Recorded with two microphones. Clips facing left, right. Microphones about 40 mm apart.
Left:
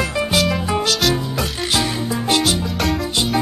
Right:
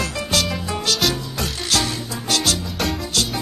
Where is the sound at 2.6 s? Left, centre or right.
Centre.